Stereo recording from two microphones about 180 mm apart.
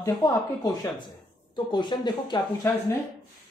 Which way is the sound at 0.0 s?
20° left (ahead or behind).